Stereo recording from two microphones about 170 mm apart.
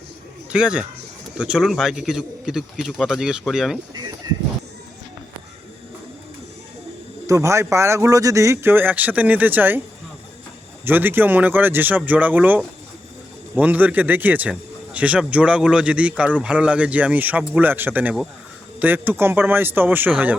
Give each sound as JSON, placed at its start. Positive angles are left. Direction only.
{"t": 0.5, "sound": "a man's voice", "side_deg": -5}
{"t": 7.3, "sound": "a man's voice", "side_deg": -15}
{"t": 10.8, "sound": "a man's voice", "side_deg": -10}